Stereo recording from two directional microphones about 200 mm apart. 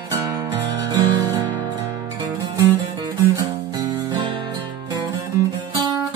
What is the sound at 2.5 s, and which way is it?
Guitar, 20° right (ahead or behind).